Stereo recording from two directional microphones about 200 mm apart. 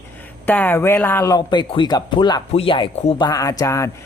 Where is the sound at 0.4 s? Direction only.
10° left (ahead or behind).